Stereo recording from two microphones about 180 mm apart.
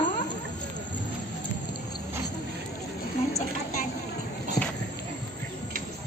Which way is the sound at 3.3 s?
35° left (ahead or behind).